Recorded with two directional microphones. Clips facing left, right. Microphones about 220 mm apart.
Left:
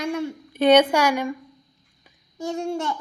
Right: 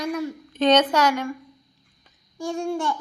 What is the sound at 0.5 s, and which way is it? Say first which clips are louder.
Speech: left 3 dB; 10° left (ahead or behind).